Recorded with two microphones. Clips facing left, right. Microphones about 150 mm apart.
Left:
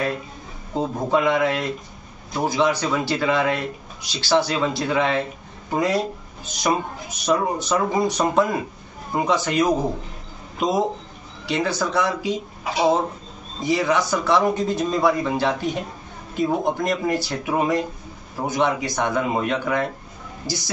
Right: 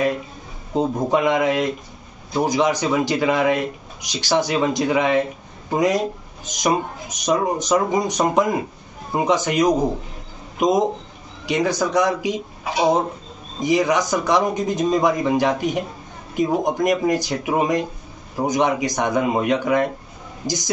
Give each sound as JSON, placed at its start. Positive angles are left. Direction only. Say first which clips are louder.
{"t": 0.7, "sound": "speech", "louder": "right 2 dB", "side_deg": -20}
{"t": 13.6, "sound": "speech", "louder": "right 2 dB", "side_deg": -15}